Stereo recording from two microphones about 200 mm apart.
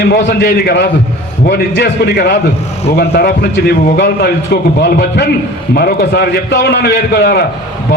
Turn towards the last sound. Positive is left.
turn(degrees=55)  # may be behind; listen again after turning